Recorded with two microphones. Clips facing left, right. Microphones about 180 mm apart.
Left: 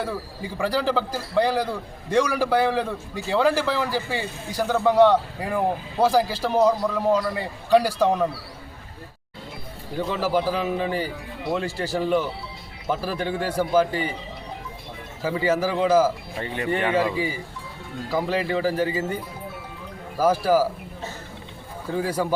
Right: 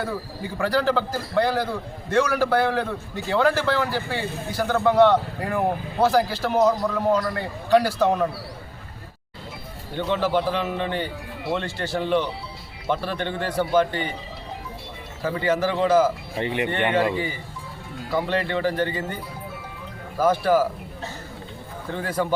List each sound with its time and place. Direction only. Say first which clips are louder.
0.6 s a man's voice: right 1 dB; 10° left (ahead or behind)
9.9 s speech: right 1 dB; 5° left (ahead or behind)
15.2 s a man's voice: even; 5° left (ahead or behind)
16.4 s speech: right 5 dB; 15° right (ahead or behind)
16.6 s a man's voice: left 2 dB; 5° left (ahead or behind)